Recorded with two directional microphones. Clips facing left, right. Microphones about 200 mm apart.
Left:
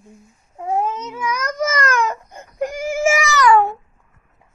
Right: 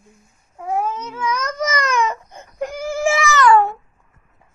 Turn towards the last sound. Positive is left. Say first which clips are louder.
# even
turn(degrees=15)  # may be behind; listen again after turning